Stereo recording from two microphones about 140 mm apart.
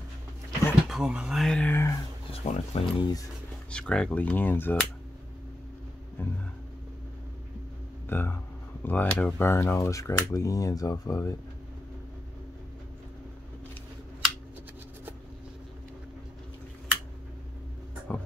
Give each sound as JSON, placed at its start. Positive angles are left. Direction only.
{"t": 0.8, "sound": "speech", "side_deg": -5}
{"t": 2.3, "sound": "speech", "side_deg": 45}
{"t": 3.7, "sound": "speech", "side_deg": 5}
{"t": 6.2, "sound": "a sound", "side_deg": 15}
{"t": 8.1, "sound": "speech", "side_deg": 15}
{"t": 18.1, "sound": "music", "side_deg": 10}